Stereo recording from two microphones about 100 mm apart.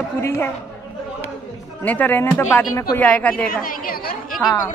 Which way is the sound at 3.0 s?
15° left (ahead or behind).